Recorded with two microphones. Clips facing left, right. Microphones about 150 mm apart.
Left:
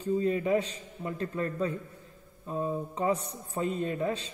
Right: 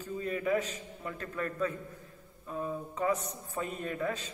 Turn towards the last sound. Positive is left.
turn(degrees=30)  # may be behind; listen again after turning